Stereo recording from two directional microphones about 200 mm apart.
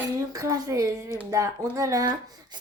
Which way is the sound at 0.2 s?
15° right (ahead or behind).